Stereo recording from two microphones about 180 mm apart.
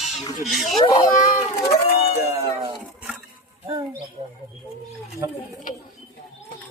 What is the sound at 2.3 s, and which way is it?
Cat, 15° right (ahead or behind).